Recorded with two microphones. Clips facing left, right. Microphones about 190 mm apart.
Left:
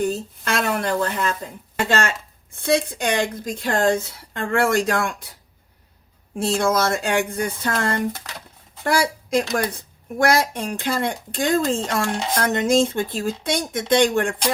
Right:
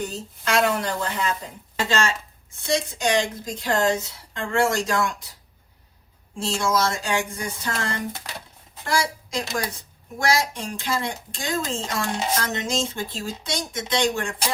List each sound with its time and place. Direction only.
0.1 s a woman's voice: 55° left (ahead or behind)
6.4 s a woman's voice: 55° left (ahead or behind)